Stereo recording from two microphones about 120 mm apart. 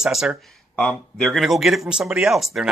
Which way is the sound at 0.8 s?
5° left (ahead or behind).